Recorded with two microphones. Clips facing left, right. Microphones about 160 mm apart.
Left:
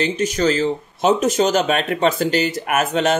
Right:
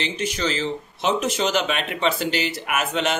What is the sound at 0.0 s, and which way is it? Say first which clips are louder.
Speech: left 7 dB; 45° left (ahead or behind).